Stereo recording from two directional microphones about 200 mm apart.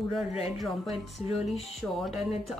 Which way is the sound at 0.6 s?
Centre (ahead or behind).